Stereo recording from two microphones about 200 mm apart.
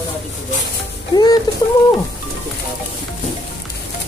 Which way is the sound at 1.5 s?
20° left (ahead or behind).